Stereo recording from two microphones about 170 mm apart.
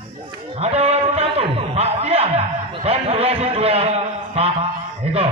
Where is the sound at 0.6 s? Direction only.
40° right (ahead or behind).